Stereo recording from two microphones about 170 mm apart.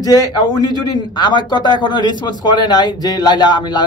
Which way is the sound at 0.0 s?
20° left (ahead or behind).